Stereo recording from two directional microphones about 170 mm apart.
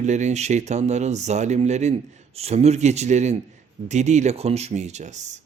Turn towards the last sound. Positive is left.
turn(degrees=-45)  # may be behind; listen again after turning